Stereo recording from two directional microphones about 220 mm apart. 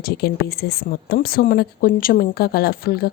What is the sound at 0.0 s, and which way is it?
A woman's voice, 45° left (ahead or behind).